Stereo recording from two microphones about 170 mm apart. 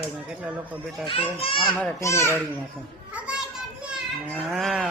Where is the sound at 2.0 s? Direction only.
15° left (ahead or behind).